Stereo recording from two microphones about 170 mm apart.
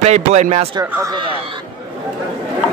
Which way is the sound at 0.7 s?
25° right (ahead or behind).